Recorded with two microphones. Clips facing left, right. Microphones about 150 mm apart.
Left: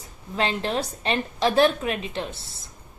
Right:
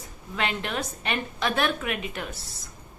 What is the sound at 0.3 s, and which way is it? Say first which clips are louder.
A woman's voice: left 4 dB; 30° left (ahead or behind).